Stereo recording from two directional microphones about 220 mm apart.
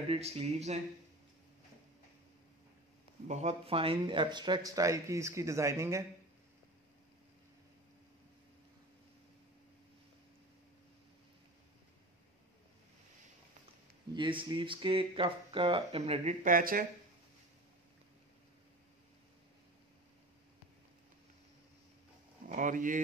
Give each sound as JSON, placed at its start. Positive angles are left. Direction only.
{"t": 0.1, "sound": "speech", "side_deg": -30}
{"t": 3.3, "sound": "speech", "side_deg": -30}
{"t": 14.1, "sound": "speech", "side_deg": -20}
{"t": 22.5, "sound": "speech", "side_deg": -35}